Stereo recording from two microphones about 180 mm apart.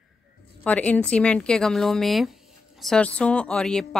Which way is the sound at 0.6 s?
10° left (ahead or behind).